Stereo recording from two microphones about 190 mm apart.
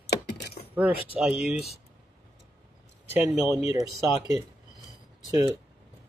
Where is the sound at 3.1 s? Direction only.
10° right (ahead or behind).